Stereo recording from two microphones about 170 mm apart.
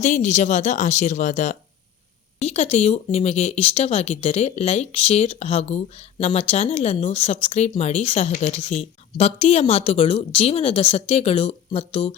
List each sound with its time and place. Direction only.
0.0 s speech: 45° left (ahead or behind)